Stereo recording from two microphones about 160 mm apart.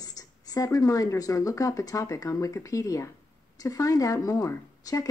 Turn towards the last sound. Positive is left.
turn(degrees=20)  # may be behind; listen again after turning